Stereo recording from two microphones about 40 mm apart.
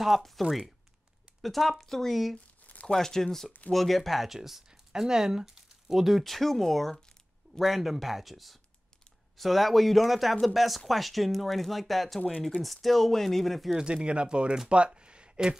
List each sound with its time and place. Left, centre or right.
0.0 s speech: centre
2.6 s crumpling: left
2.9 s speech: centre
13.7 s speech: right
15.0 s a sound: right